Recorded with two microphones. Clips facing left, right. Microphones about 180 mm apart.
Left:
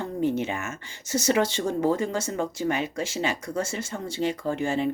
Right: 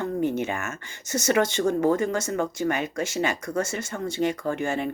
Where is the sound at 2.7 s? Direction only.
50° right (ahead or behind).